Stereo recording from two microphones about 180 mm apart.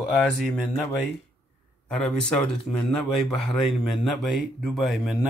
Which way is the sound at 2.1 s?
Centre (ahead or behind).